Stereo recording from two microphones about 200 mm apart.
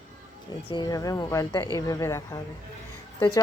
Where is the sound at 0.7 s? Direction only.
20° left (ahead or behind).